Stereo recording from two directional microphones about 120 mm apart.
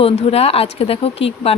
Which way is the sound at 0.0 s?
55° left (ahead or behind).